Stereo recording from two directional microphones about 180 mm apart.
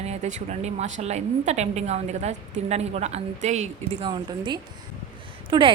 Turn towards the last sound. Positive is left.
turn(degrees=-30)  # may be behind; listen again after turning